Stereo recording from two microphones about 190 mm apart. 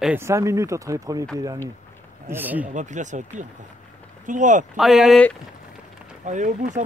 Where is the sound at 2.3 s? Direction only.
10° right (ahead or behind).